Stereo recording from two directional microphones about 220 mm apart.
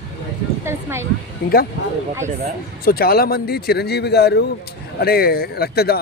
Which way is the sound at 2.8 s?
45° left (ahead or behind).